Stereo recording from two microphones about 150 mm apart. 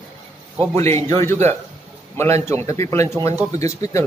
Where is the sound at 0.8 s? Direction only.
20° left (ahead or behind).